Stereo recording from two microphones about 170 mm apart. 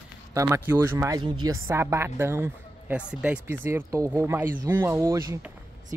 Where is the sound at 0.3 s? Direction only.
15° right (ahead or behind).